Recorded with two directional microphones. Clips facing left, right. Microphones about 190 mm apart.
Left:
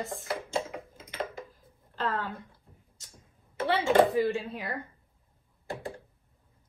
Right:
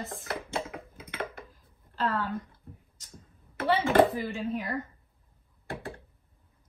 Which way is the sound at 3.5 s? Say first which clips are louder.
Even; 60° right (ahead or behind).